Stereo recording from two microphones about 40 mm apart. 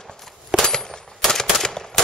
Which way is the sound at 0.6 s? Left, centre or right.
Centre.